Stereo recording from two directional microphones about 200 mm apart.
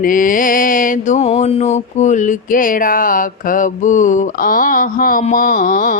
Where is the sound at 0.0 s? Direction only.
40° left (ahead or behind).